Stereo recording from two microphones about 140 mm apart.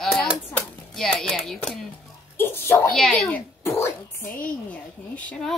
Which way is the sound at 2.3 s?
15° left (ahead or behind).